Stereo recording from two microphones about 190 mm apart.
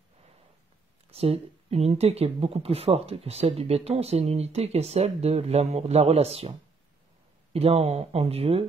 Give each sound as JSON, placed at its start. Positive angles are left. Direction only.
{"t": 1.1, "sound": "speech", "side_deg": -30}
{"t": 7.5, "sound": "speech", "side_deg": -30}